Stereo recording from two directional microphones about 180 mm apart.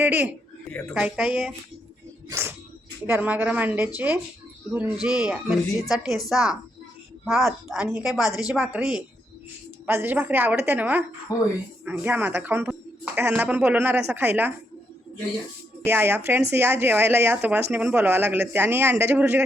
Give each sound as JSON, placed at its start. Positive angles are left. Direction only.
{"t": 0.0, "sound": "a woman's voice", "side_deg": -10}
{"t": 11.3, "sound": "speech", "side_deg": 20}
{"t": 11.9, "sound": "speech", "side_deg": -10}
{"t": 15.8, "sound": "speech", "side_deg": -10}